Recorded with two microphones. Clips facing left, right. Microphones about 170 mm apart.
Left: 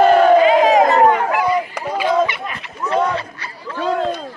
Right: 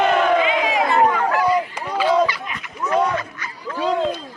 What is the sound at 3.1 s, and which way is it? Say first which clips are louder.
Chatter: left 1 dB; 30° left (ahead or behind).